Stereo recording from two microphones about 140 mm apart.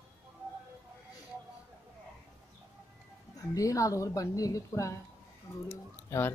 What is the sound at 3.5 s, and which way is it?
A woman's voice, 25° left (ahead or behind).